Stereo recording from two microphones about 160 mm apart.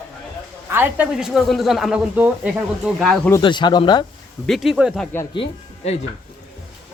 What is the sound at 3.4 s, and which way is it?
Speech, 30° left (ahead or behind).